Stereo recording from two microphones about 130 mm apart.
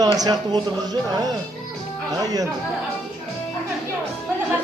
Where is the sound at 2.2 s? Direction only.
30° right (ahead or behind).